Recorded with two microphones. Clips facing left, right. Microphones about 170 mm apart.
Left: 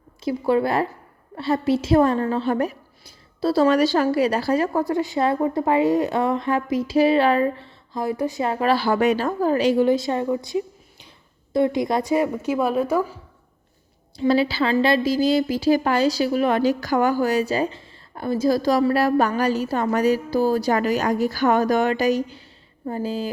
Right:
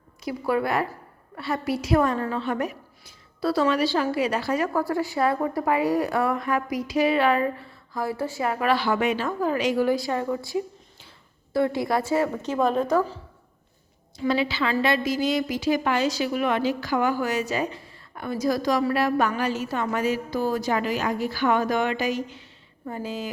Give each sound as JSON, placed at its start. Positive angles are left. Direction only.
{"t": 0.3, "sound": "a woman's voice", "side_deg": 25}
{"t": 3.7, "sound": "a woman's voice", "side_deg": 45}
{"t": 14.2, "sound": "a woman's voice", "side_deg": 35}